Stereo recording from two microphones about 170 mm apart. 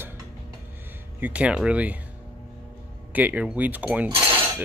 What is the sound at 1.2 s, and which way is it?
Speech, 10° right (ahead or behind).